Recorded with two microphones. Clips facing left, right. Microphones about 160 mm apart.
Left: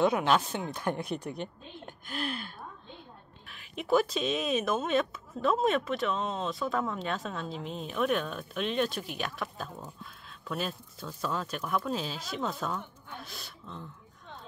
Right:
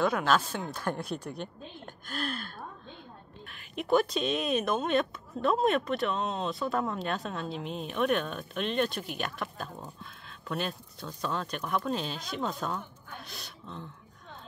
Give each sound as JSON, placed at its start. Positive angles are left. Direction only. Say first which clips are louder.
{"t": 0.0, "sound": "speech", "louder": "left 1 dB", "side_deg": 20}
{"t": 2.0, "sound": "gasp", "louder": "even", "side_deg": 15}
{"t": 3.4, "sound": "a woman's voice", "louder": "right 1 dB", "side_deg": 0}